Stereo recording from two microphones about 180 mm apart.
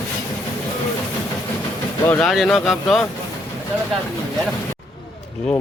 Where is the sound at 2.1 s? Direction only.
5° left (ahead or behind).